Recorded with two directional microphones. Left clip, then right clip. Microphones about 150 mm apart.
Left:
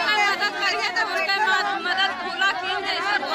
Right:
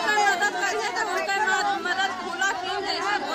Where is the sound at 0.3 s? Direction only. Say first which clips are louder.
Left 1 dB; 25° left (ahead or behind).